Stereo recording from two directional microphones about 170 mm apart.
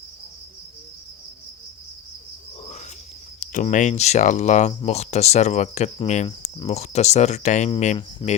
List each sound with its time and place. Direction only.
3.4 s speech: 50° left (ahead or behind)